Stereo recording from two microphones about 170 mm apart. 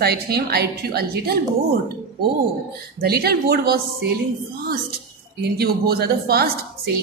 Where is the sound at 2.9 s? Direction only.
65° right (ahead or behind).